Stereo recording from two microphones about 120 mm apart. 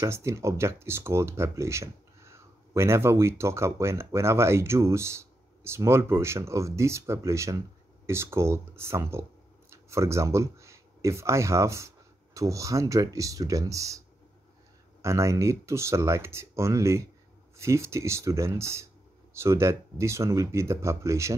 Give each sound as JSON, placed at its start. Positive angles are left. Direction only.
{"t": 0.0, "sound": "speech", "side_deg": -25}